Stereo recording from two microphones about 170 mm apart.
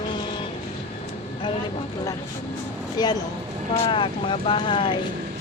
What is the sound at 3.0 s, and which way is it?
Speech, 25° left (ahead or behind).